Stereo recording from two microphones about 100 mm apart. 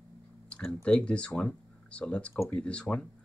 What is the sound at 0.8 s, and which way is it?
Speech, 10° left (ahead or behind).